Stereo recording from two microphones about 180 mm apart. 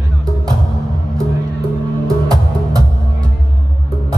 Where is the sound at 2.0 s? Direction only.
20° right (ahead or behind).